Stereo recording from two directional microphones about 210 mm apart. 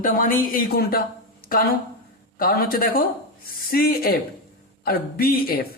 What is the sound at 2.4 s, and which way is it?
Speech, 45° left (ahead or behind).